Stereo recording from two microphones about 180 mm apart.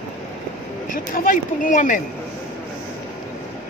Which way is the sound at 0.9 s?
50° left (ahead or behind).